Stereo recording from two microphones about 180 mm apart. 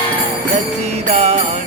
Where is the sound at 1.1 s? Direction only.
35° right (ahead or behind).